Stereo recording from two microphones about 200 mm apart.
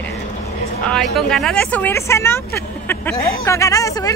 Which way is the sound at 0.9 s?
Centre (ahead or behind).